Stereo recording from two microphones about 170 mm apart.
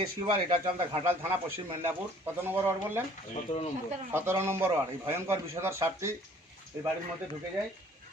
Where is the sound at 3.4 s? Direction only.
35° left (ahead or behind).